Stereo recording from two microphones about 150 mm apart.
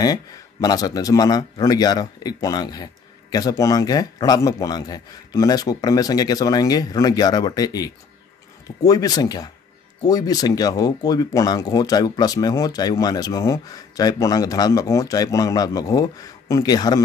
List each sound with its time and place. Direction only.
0.0 s a man's voice: 25° left (ahead or behind)